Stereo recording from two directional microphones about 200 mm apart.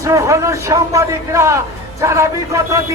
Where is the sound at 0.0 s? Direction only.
15° right (ahead or behind).